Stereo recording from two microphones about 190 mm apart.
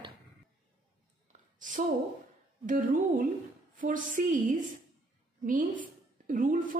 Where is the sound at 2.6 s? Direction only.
45° right (ahead or behind).